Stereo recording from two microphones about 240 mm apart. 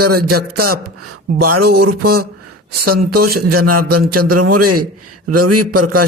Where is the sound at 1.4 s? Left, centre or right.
Right.